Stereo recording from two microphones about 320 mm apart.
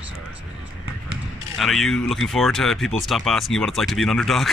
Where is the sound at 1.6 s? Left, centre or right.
Centre.